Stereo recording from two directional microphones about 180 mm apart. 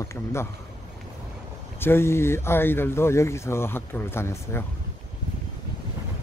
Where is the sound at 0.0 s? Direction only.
15° left (ahead or behind).